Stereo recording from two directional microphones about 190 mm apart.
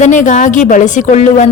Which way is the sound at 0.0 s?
40° left (ahead or behind).